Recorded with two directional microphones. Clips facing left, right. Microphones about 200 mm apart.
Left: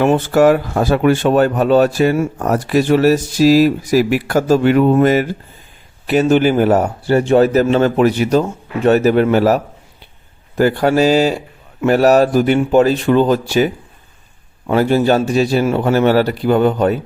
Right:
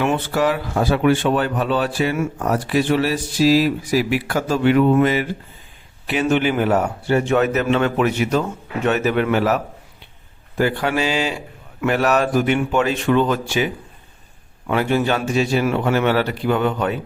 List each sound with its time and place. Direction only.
0.0 s a man's voice: 45° left (ahead or behind)
10.6 s a man's voice: 40° left (ahead or behind)
14.7 s a man's voice: 35° left (ahead or behind)